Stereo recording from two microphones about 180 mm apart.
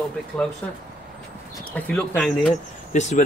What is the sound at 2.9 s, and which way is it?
Speech, 40° left (ahead or behind).